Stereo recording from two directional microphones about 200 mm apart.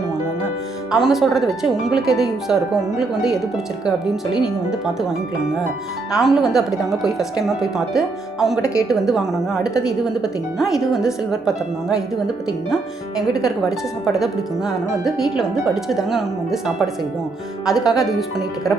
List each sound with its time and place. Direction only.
0.9 s speech: centre (ahead or behind)
6.1 s speech: centre (ahead or behind)
13.4 s speech: centre (ahead or behind)